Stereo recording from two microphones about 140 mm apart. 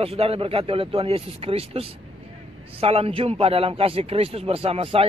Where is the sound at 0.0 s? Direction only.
45° right (ahead or behind).